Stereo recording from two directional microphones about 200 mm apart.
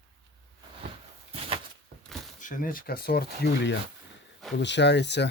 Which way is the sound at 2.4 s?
40° left (ahead or behind).